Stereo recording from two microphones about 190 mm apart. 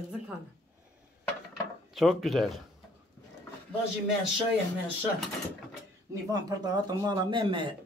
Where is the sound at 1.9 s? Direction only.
Centre (ahead or behind).